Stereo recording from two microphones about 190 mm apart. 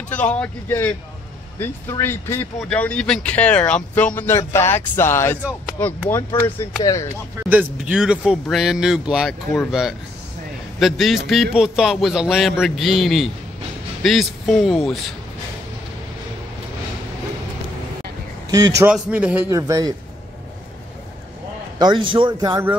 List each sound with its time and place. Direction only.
0.1 s speech: 5° left (ahead or behind)
7.4 s speech: 10° right (ahead or behind)
18.8 s a man's voice: 10° right (ahead or behind)
21.7 s a man's voice: 20° right (ahead or behind)